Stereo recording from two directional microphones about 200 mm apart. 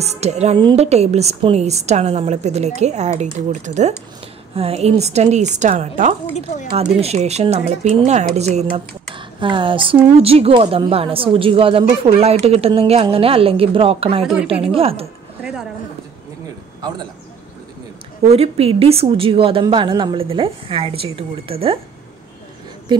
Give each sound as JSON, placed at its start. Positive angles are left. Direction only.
{"t": 0.0, "sound": "a woman's voice", "side_deg": -30}
{"t": 6.3, "sound": "speech", "side_deg": 40}
{"t": 6.7, "sound": "a woman's voice", "side_deg": -30}
{"t": 18.3, "sound": "speech", "side_deg": -30}